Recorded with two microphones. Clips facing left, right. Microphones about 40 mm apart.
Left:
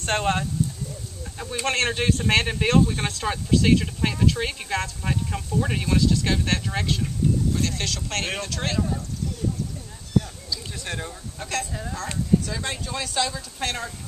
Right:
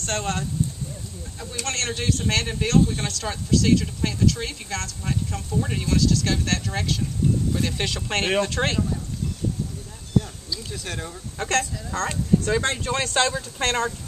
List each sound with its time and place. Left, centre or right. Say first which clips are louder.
0.0 s speech: left 3 dB; left; by 7.0 s centre
7.5 s speech: right 1 dB; centre; by 8.7 s right
10.7 s speech: even; centre
11.3 s speech: right 6 dB; right